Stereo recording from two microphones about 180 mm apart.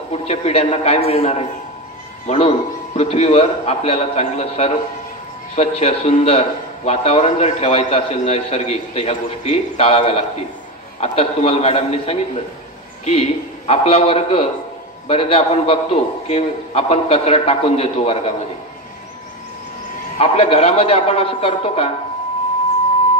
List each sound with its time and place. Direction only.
0.1 s a man's voice: 35° left (ahead or behind)
20.2 s a man's voice: 35° left (ahead or behind)